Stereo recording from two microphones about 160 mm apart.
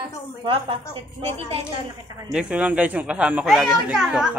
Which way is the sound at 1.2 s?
40° right (ahead or behind).